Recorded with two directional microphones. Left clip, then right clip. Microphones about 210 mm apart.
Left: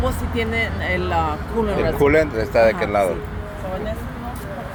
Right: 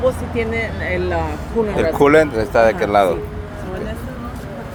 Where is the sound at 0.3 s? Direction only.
30° left (ahead or behind).